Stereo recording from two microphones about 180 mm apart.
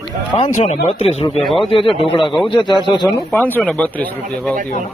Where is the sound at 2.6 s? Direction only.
25° left (ahead or behind).